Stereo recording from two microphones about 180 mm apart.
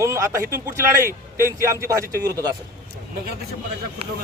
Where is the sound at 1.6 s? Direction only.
15° right (ahead or behind).